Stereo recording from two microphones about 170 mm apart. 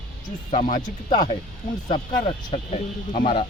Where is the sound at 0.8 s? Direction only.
25° left (ahead or behind).